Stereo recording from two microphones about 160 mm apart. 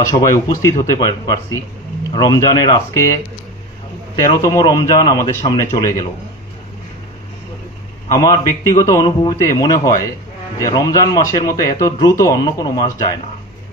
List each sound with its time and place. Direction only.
0.0 s a man's voice: 20° left (ahead or behind)
4.3 s a man's voice: 25° left (ahead or behind)
8.1 s a man's voice: 20° left (ahead or behind)